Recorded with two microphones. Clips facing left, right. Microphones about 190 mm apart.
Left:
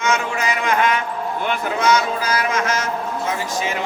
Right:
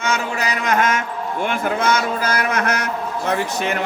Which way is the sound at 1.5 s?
50° right (ahead or behind).